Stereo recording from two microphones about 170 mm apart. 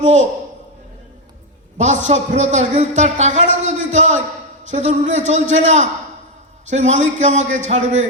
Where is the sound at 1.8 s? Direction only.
45° right (ahead or behind).